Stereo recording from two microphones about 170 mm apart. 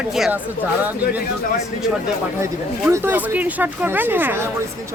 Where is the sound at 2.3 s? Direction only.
15° right (ahead or behind).